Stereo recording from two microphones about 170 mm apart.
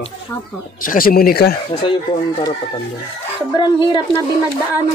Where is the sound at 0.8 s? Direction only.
55° left (ahead or behind).